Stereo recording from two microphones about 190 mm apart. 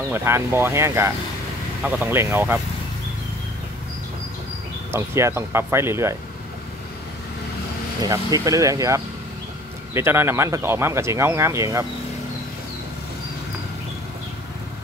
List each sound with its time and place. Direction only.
0.1 s speech: 15° right (ahead or behind)
4.9 s speech: 15° right (ahead or behind)
8.0 s speech: 20° right (ahead or behind)